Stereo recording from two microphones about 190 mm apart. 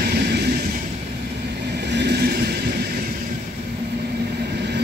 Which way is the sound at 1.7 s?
65° right (ahead or behind).